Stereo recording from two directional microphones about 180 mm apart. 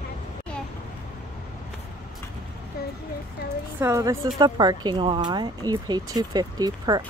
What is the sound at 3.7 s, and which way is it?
Speech, 15° right (ahead or behind).